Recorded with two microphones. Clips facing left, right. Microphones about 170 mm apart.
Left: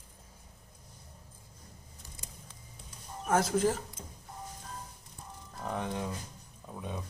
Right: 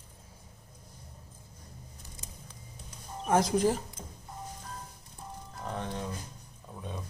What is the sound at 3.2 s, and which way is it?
Speech, 15° right (ahead or behind).